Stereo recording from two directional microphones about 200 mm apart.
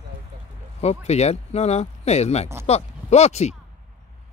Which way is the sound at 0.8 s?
35° left (ahead or behind).